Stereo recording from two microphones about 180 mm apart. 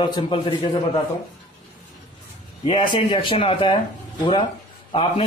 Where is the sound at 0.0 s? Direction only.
30° left (ahead or behind).